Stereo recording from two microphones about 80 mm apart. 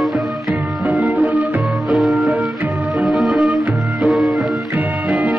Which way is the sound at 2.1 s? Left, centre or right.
Centre.